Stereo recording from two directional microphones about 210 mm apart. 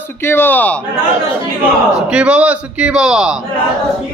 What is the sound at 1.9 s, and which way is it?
A man's voice, 5° right (ahead or behind).